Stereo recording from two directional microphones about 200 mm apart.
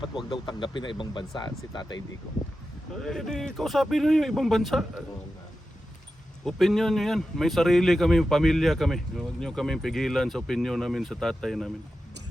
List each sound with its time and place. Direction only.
0.3 s speech: 25° left (ahead or behind)
3.0 s speech: centre (ahead or behind)
6.4 s speech: centre (ahead or behind)